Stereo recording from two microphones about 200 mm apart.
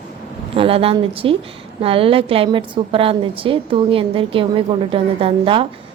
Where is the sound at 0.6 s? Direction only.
30° right (ahead or behind).